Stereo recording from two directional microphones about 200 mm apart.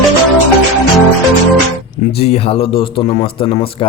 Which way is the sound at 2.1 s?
30° left (ahead or behind).